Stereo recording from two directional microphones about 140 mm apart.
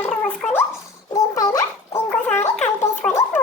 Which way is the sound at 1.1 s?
25° left (ahead or behind).